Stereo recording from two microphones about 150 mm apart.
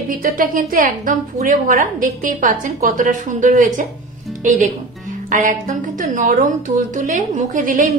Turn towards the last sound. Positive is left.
turn(degrees=-60)  # may be behind; listen again after turning